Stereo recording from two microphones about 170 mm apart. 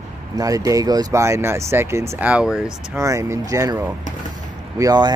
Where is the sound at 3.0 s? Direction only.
20° right (ahead or behind).